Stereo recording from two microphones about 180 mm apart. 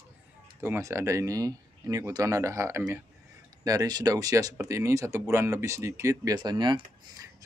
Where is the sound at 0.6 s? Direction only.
15° right (ahead or behind).